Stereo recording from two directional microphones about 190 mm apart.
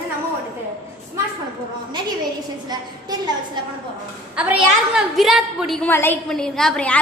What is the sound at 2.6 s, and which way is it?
Speech, 20° right (ahead or behind).